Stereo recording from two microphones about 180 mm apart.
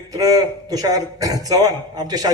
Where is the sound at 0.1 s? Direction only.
20° right (ahead or behind).